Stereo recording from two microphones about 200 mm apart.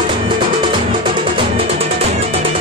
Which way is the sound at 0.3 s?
25° right (ahead or behind).